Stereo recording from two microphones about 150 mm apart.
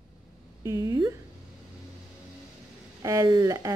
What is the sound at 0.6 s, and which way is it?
Speech, 20° right (ahead or behind).